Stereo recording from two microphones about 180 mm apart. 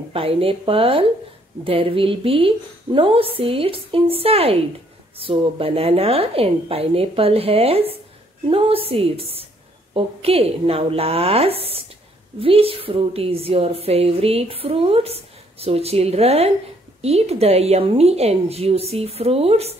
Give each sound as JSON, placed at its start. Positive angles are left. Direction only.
{"t": 0.1, "sound": "a woman's voice", "side_deg": -30}